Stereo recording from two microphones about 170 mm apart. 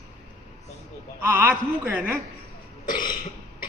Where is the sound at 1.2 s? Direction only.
10° right (ahead or behind).